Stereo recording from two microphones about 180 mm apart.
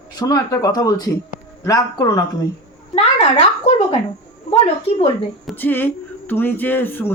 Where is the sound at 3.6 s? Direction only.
35° left (ahead or behind).